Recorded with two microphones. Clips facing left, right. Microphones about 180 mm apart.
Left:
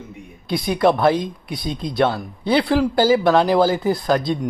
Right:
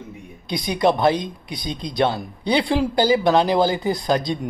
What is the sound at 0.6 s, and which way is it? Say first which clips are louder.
Speech: left 2 dB; 20° right (ahead or behind).